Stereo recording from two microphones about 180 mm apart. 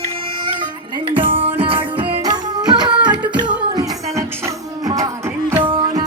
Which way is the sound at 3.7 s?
20° right (ahead or behind).